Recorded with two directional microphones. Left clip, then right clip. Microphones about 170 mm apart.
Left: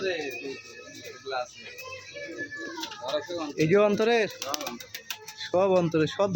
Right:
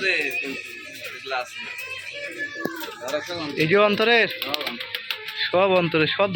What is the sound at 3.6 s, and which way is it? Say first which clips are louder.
Speech: right 4 dB; 10° left (ahead or behind).